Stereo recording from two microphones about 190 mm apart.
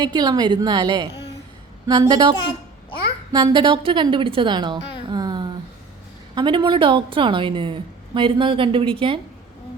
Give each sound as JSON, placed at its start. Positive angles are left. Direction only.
{"t": 0.0, "sound": "a woman's voice", "side_deg": -20}
{"t": 3.3, "sound": "a woman's voice", "side_deg": -25}
{"t": 5.1, "sound": "a sound", "side_deg": -20}
{"t": 6.3, "sound": "a woman's voice", "side_deg": -25}